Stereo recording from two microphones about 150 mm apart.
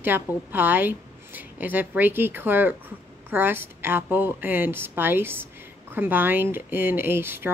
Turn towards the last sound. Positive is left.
turn(degrees=-15)  # may be behind; listen again after turning